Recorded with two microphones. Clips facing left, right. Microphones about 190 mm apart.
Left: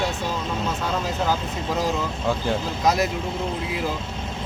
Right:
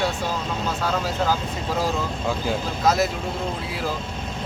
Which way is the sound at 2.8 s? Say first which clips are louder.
Right 1 dB; 15° left (ahead or behind).